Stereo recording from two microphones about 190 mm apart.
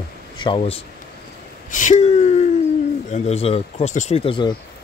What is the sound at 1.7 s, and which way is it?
Speech, 40° left (ahead or behind).